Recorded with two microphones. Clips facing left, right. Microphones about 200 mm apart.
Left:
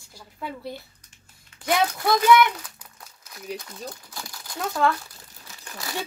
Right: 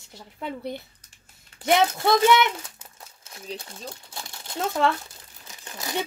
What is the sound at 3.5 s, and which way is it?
A child's voice, 25° right (ahead or behind).